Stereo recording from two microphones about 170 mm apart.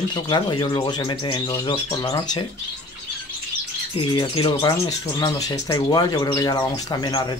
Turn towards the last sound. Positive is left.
turn(degrees=25)  # may be behind; listen again after turning